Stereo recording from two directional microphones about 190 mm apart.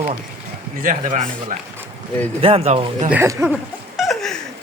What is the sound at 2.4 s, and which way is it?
Speech, 30° right (ahead or behind).